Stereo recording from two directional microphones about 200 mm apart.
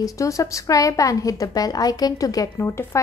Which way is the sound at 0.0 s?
15° left (ahead or behind).